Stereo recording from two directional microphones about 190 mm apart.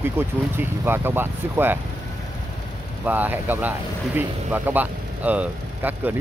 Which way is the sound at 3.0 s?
10° right (ahead or behind).